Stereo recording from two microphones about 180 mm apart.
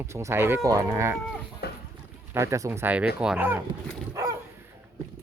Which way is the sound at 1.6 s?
60° left (ahead or behind).